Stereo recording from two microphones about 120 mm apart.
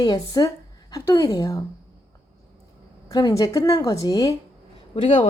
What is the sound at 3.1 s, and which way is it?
Speech, 35° left (ahead or behind).